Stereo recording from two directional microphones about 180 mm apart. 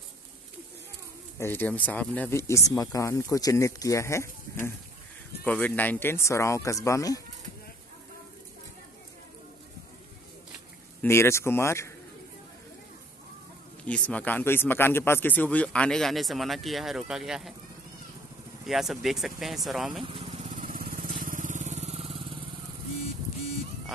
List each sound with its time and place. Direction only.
1.4 s speech: 10° left (ahead or behind)
11.0 s speech: 15° left (ahead or behind)
13.8 s speech: 5° left (ahead or behind)
18.7 s speech: centre (ahead or behind)
20.6 s vehicle: 55° right (ahead or behind); by 22.2 s 35° right (ahead or behind)